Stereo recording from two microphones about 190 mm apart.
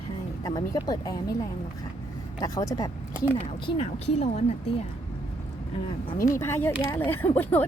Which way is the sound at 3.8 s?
35° left (ahead or behind).